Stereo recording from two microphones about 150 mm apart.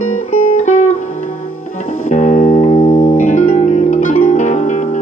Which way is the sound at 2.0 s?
50° left (ahead or behind).